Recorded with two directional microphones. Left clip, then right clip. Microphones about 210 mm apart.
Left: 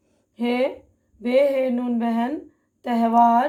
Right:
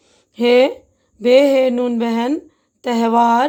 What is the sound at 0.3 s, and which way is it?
A woman's voice, 50° right (ahead or behind).